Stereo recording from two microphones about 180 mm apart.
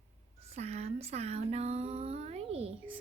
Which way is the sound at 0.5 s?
35° right (ahead or behind).